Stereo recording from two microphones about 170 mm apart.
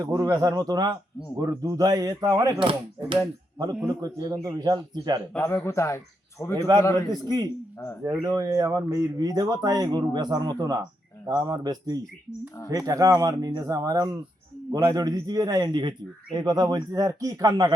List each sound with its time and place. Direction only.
0.0 s a man's voice: 20° right (ahead or behind)
5.4 s a man's voice: 15° left (ahead or behind)
6.7 s a man's voice: 25° right (ahead or behind)